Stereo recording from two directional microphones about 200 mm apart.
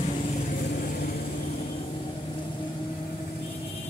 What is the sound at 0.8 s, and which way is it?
Vehicle, 50° left (ahead or behind).